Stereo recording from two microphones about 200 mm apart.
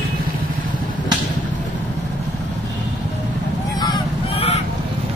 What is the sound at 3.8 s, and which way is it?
Honk, 25° left (ahead or behind).